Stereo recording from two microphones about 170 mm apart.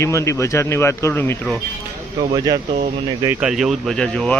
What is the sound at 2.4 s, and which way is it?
Speech, 20° right (ahead or behind).